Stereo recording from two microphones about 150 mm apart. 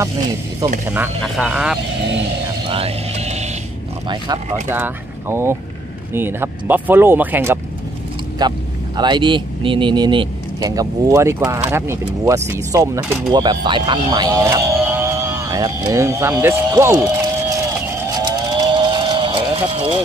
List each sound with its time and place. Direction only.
0.8 s speech: 15° right (ahead or behind)
1.2 s speech: centre (ahead or behind)
2.7 s vehicle: 45° right (ahead or behind)
4.6 s speech: 15° right (ahead or behind)
8.4 s speech: 30° right (ahead or behind)
18.2 s a sound: 30° right (ahead or behind)